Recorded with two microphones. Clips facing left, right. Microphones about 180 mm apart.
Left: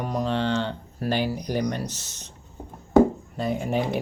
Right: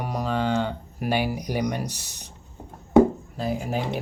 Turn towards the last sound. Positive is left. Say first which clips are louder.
# left 2 dB
turn(degrees=0)  # may be behind; listen again after turning